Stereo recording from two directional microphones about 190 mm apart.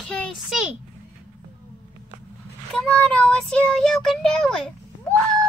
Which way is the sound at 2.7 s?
5° left (ahead or behind).